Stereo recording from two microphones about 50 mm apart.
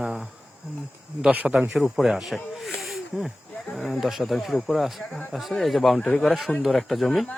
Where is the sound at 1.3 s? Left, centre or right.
Right.